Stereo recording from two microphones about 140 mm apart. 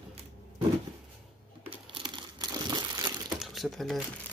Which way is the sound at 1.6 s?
35° right (ahead or behind).